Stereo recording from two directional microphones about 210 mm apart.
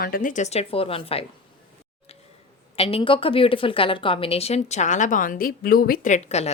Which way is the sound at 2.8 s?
25° left (ahead or behind).